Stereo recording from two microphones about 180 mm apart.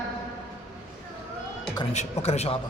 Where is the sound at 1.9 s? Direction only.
35° left (ahead or behind).